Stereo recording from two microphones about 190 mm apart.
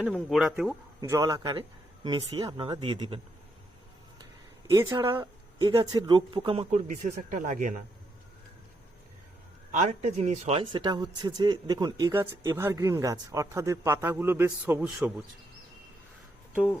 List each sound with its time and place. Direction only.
0.0 s speech: centre (ahead or behind)
1.0 s speech: 15° right (ahead or behind)
4.7 s speech: 20° right (ahead or behind); by 7.8 s 40° right (ahead or behind)
9.7 s speech: 35° right (ahead or behind); by 15.1 s 5° right (ahead or behind)